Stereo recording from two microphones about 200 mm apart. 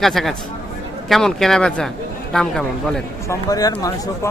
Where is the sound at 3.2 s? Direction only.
15° left (ahead or behind).